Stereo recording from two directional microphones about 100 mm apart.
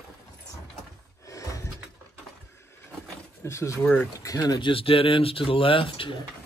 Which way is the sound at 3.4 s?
30° left (ahead or behind).